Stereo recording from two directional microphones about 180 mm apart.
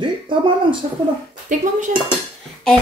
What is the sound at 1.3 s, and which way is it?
Speech, 45° right (ahead or behind).